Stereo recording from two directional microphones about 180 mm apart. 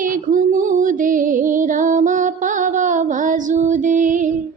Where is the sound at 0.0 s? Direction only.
50° right (ahead or behind).